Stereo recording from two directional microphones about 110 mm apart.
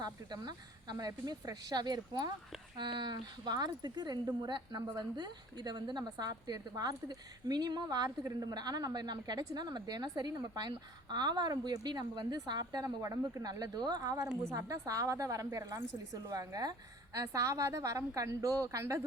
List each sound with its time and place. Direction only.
0.0 s a woman's voice: 40° right (ahead or behind)